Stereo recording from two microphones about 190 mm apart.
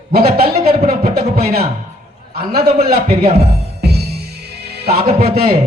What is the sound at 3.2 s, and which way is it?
Speech, 35° right (ahead or behind).